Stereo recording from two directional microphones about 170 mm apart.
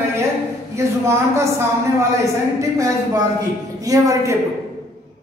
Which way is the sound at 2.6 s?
20° right (ahead or behind).